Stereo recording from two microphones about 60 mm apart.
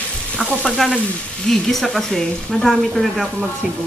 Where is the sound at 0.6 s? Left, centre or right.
Centre.